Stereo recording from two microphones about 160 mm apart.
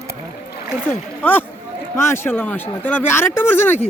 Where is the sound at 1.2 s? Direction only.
10° left (ahead or behind).